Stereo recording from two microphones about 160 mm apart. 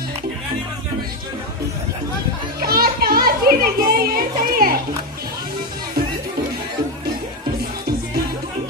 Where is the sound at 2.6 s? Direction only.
70° right (ahead or behind).